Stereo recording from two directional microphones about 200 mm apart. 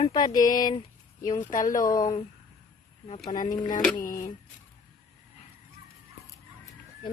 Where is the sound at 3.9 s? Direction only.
40° left (ahead or behind).